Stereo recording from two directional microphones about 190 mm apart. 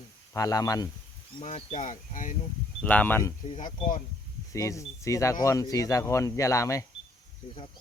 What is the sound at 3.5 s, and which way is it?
Speech, 45° left (ahead or behind).